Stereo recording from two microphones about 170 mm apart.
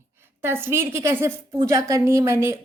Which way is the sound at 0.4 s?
15° right (ahead or behind).